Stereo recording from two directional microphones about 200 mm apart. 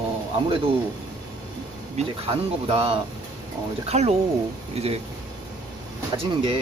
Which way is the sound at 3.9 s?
30° right (ahead or behind).